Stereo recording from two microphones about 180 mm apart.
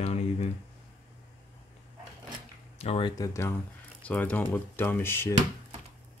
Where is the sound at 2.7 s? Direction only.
35° left (ahead or behind).